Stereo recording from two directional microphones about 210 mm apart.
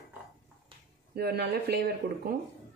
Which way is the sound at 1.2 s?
50° right (ahead or behind).